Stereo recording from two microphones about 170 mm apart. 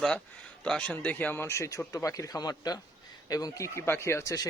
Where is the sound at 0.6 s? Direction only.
5° left (ahead or behind).